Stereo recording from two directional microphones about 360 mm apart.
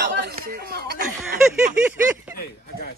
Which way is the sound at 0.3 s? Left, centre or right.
Right.